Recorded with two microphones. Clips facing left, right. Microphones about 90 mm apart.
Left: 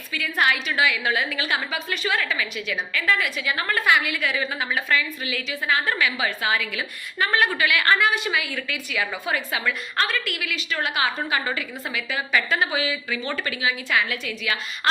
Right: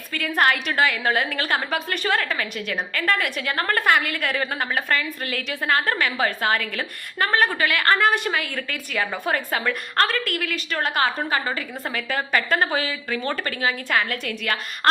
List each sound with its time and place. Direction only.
0.1 s a woman's voice: 50° right (ahead or behind)
12.5 s a woman's voice: 50° right (ahead or behind)